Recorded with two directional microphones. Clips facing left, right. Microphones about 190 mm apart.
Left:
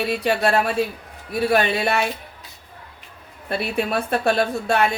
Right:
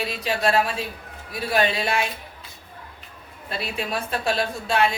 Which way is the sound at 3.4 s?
55° left (ahead or behind).